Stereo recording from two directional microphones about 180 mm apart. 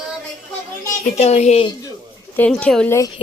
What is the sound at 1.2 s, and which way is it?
Speech, 35° left (ahead or behind).